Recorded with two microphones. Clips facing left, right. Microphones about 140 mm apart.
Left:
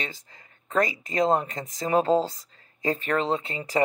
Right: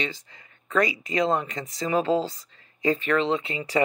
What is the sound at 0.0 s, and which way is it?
Speech, 40° left (ahead or behind).